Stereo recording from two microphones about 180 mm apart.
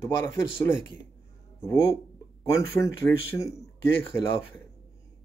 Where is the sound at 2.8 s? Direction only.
15° left (ahead or behind).